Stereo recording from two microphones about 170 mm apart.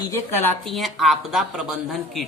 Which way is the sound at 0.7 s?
Centre (ahead or behind).